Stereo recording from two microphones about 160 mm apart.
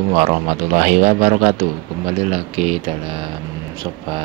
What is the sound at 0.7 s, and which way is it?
Speech, 55° right (ahead or behind).